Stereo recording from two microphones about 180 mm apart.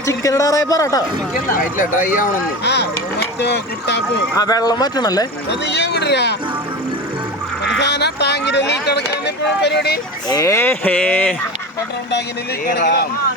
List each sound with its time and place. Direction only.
0.0 s speech: 15° left (ahead or behind)
1.5 s speech: 50° left (ahead or behind)
2.6 s speech: 65° left (ahead or behind)
4.4 s speech: 20° left (ahead or behind)
5.5 s speech: 70° left (ahead or behind)
7.8 s speech: 70° left (ahead or behind)
10.2 s speech: 20° left (ahead or behind)
12.6 s speech: 60° left (ahead or behind)